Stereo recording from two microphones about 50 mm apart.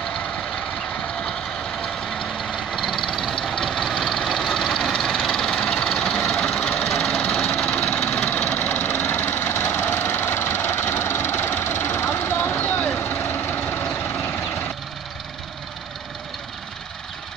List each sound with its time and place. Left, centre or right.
2.5 s vehicle: centre
5.2 s engine: centre
6.6 s engine: left
12.9 s vehicle: left